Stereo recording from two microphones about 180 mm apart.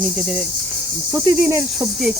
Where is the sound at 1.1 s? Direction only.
10° right (ahead or behind).